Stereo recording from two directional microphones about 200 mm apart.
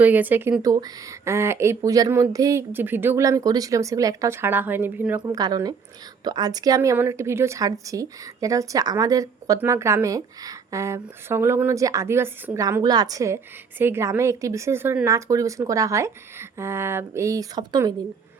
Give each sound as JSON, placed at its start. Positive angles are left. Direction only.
{"t": 0.0, "sound": "a woman's voice", "side_deg": -10}
{"t": 5.2, "sound": "a woman's voice", "side_deg": -20}